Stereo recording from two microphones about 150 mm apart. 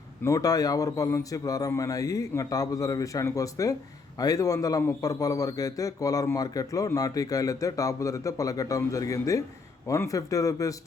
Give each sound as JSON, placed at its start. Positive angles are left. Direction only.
{"t": 0.2, "sound": "a man's voice", "side_deg": 20}